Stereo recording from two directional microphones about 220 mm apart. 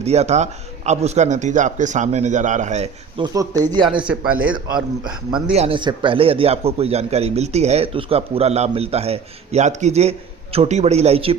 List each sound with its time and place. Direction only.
0.0 s a man's voice: 30° right (ahead or behind)
3.3 s speech: 15° right (ahead or behind)
3.8 s a man's voice: 5° right (ahead or behind)
4.5 s a man's voice: 20° right (ahead or behind)